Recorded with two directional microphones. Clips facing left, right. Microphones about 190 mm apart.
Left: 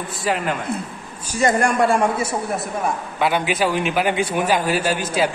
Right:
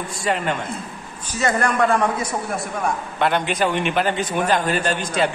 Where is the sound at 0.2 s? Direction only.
5° left (ahead or behind).